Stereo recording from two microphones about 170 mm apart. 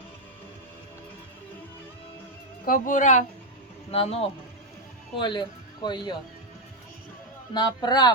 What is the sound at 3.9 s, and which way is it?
A man's voice, 35° left (ahead or behind).